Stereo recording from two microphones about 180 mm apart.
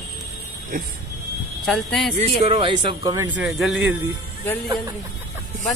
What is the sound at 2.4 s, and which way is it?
Speech, 30° right (ahead or behind).